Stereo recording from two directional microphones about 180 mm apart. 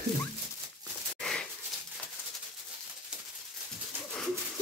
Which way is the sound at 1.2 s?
5° left (ahead or behind).